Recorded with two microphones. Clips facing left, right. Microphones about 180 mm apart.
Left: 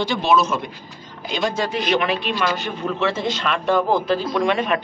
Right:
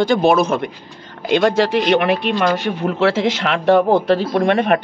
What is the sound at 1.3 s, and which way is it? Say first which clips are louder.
Speech: right 8 dB; 70° right (ahead or behind).